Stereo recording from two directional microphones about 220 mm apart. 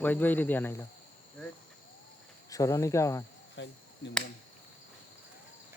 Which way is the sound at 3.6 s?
55° left (ahead or behind).